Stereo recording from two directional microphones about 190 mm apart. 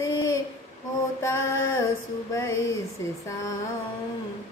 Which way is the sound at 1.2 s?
15° left (ahead or behind).